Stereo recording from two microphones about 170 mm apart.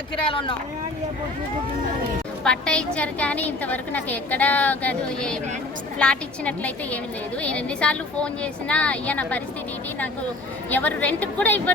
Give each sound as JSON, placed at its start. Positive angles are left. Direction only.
{"t": 0.3, "sound": "speech", "side_deg": 30}
{"t": 2.4, "sound": "a woman's voice", "side_deg": 5}
{"t": 10.7, "sound": "a woman's voice", "side_deg": 10}